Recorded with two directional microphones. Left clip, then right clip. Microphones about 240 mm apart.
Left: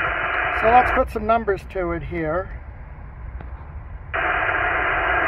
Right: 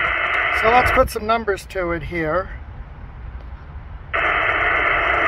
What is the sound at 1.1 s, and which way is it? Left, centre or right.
Speech, centre.